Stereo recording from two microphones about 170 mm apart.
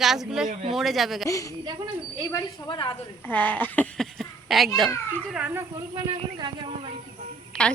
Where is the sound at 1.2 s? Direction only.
20° left (ahead or behind).